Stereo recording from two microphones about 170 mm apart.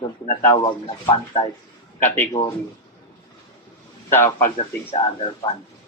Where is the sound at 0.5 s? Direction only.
30° left (ahead or behind).